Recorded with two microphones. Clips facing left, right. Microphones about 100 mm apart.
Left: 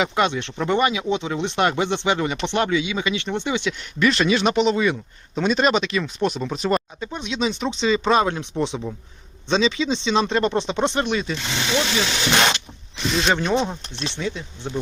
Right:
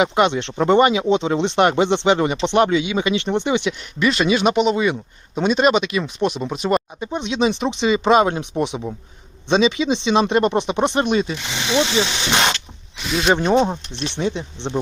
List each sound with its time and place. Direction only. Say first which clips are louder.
0.0 s speech: right 4 dB; 20° right (ahead or behind)
7.0 s speech: right 5 dB; 20° right (ahead or behind)
13.1 s speech: right 2 dB; 5° right (ahead or behind)
13.3 s speech: right 5 dB; 20° right (ahead or behind)